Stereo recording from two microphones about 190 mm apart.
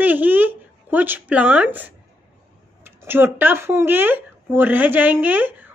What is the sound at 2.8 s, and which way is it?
Speech, 10° right (ahead or behind).